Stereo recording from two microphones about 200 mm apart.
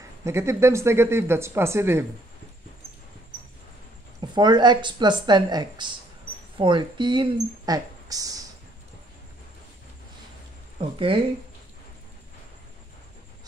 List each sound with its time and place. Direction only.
0.2 s speech: 15° right (ahead or behind)
4.2 s a woman's voice: 20° right (ahead or behind)
10.8 s a woman's voice: 25° right (ahead or behind)